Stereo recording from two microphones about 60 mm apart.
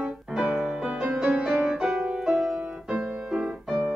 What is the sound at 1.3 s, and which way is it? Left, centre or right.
Music, centre.